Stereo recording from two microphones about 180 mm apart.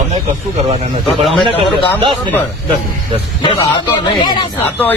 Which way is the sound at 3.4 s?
25° left (ahead or behind).